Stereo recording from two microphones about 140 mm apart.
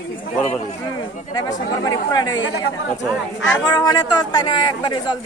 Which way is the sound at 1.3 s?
30° left (ahead or behind).